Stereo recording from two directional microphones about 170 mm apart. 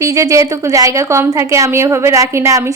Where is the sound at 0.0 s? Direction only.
20° right (ahead or behind).